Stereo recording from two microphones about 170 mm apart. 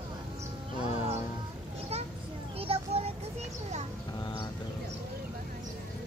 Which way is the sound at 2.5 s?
35° right (ahead or behind).